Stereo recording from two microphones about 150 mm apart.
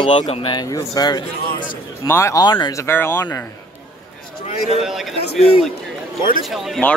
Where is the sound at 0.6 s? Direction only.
25° left (ahead or behind).